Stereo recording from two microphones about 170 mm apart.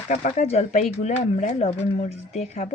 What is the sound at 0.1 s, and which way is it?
Speech, 45° left (ahead or behind).